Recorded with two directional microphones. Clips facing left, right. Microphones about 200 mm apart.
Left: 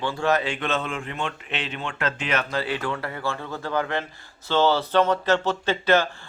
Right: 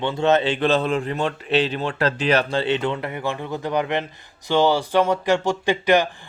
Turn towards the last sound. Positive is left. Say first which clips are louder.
# right 3 dB
turn(degrees=-15)  # may be behind; listen again after turning